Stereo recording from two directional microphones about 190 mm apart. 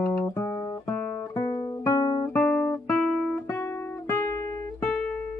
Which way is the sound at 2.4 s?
5° left (ahead or behind).